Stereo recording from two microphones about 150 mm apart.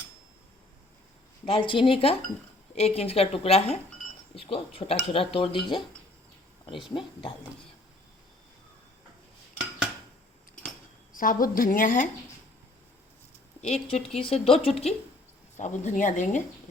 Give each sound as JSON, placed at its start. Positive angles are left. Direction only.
{"t": 1.5, "sound": "a woman's voice", "side_deg": 35}
{"t": 6.8, "sound": "speech", "side_deg": 35}
{"t": 11.1, "sound": "a woman's voice", "side_deg": 65}
{"t": 13.6, "sound": "a woman's voice", "side_deg": 45}